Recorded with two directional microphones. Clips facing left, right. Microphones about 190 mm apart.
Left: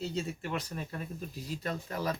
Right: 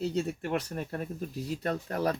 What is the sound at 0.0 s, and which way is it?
Speech, 60° right (ahead or behind).